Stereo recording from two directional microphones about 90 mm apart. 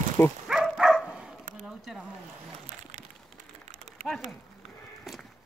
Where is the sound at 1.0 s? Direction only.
10° right (ahead or behind).